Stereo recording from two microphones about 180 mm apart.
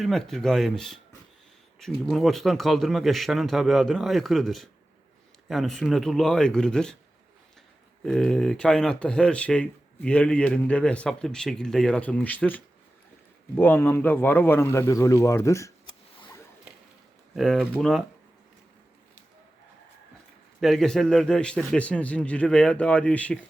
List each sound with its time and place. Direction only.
0.0 s speech: centre (ahead or behind)
2.0 s speech: centre (ahead or behind)
8.0 s speech: 5° left (ahead or behind)
17.3 s speech: centre (ahead or behind)
20.6 s speech: centre (ahead or behind)